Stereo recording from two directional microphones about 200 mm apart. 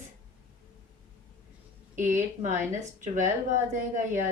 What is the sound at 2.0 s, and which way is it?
Speech, 40° right (ahead or behind).